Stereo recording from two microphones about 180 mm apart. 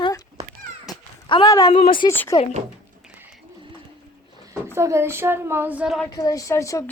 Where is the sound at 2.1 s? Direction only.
10° left (ahead or behind).